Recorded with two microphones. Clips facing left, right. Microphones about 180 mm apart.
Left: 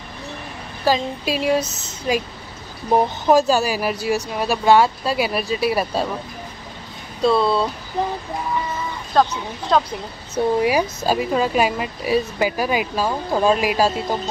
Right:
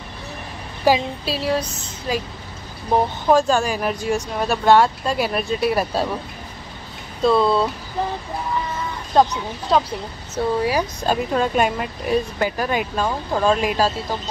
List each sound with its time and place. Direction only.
0.9 s speech: 15° right (ahead or behind)
1.2 s speech: 15° left (ahead or behind)
3.3 s speech: 5° left (ahead or behind)
7.2 s speech: centre (ahead or behind)
9.1 s speech: 20° right (ahead or behind)
9.7 s speech: 5° right (ahead or behind)
10.3 s speech: 15° left (ahead or behind)